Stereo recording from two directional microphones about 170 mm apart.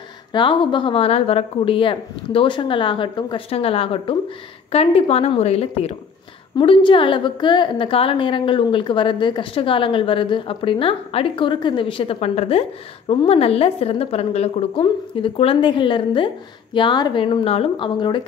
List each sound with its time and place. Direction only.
0.3 s a woman's voice: 30° left (ahead or behind)